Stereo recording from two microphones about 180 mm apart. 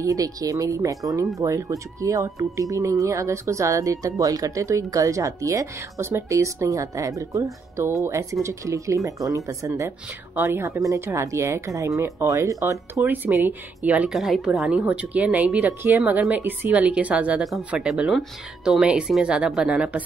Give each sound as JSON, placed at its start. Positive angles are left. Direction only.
{"t": 0.0, "sound": "speech", "side_deg": -20}